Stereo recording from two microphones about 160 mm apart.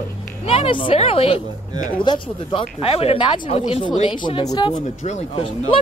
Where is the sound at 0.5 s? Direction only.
35° left (ahead or behind).